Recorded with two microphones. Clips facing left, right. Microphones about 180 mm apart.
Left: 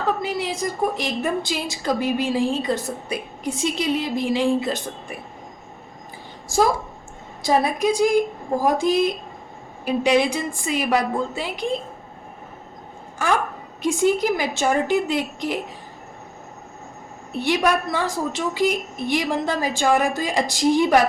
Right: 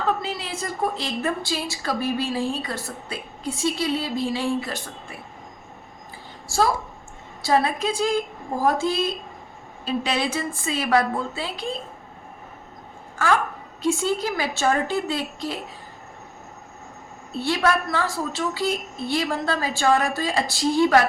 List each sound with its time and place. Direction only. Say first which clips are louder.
0.2 s a woman's voice: left 5 dB; 15° left (ahead or behind)
6.5 s a woman's voice: left 3 dB; 20° left (ahead or behind)
13.7 s a woman's voice: left 4 dB; 15° left (ahead or behind)
17.3 s a woman's voice: left 2 dB; 15° left (ahead or behind)